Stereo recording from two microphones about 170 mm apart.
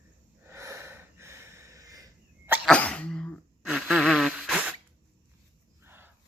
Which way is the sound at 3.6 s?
5° right (ahead or behind).